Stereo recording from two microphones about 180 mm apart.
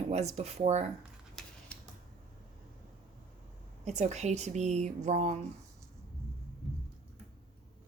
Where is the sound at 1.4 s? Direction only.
5° left (ahead or behind).